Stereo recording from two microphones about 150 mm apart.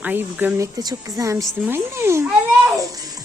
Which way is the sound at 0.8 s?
25° right (ahead or behind).